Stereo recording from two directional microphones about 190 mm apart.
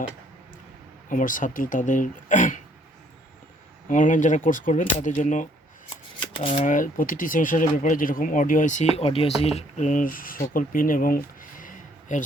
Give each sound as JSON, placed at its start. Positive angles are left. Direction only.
{"t": 1.1, "sound": "speech", "side_deg": 45}
{"t": 3.8, "sound": "speech", "side_deg": 40}
{"t": 6.3, "sound": "speech", "side_deg": 30}
{"t": 6.7, "sound": "speech", "side_deg": 45}